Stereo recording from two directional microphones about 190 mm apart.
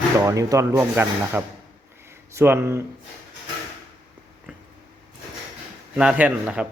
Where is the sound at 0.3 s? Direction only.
15° right (ahead or behind).